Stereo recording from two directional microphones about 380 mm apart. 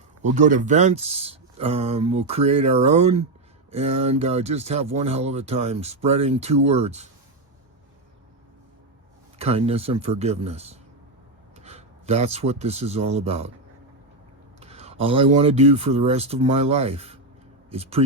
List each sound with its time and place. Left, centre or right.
0.2 s speech: centre
9.4 s speech: centre
14.6 s speech: centre